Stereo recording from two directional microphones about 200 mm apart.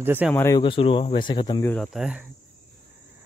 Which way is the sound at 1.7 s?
Centre (ahead or behind).